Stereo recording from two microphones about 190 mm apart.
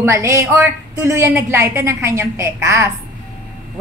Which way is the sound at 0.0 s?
15° right (ahead or behind).